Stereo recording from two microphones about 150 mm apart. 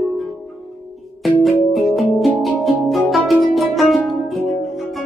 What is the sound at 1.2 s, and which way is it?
Music, centre (ahead or behind).